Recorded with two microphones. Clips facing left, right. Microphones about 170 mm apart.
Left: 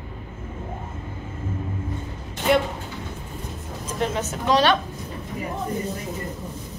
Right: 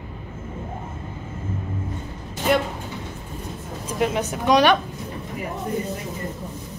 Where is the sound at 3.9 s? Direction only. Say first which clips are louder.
Right 3 dB; 15° right (ahead or behind).